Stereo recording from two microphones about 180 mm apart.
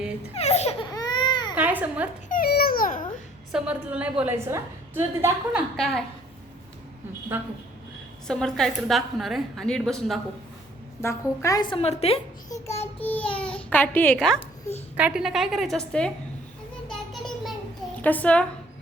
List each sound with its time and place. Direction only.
0.3 s speech: 35° left (ahead or behind)
0.9 s baby cry: 25° left (ahead or behind)
1.5 s a woman's voice: 10° right (ahead or behind)
2.3 s babbling: 55° left (ahead or behind)
3.5 s a woman's voice: 5° right (ahead or behind)
5.7 s a woman's voice: centre (ahead or behind)
7.3 s a woman's voice: 10° right (ahead or behind)
8.3 s a woman's voice: 5° left (ahead or behind)
11.0 s a woman's voice: 15° left (ahead or behind); by 12.2 s 35° left (ahead or behind)
13.0 s a child's voice: 10° left (ahead or behind)
14.9 s a woman's voice: 5° right (ahead or behind)
17.1 s a sound: centre (ahead or behind)
18.0 s a child's voice: 10° left (ahead or behind)